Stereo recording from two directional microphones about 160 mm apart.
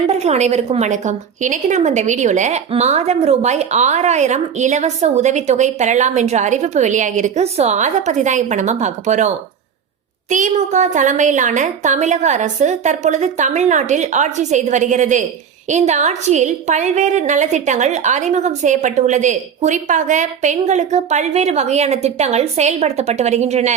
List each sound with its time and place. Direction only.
0.1 s a woman's voice: 40° right (ahead or behind)